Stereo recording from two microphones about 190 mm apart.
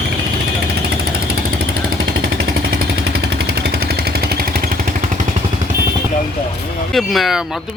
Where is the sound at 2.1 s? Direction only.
70° right (ahead or behind); by 5.2 s 45° right (ahead or behind).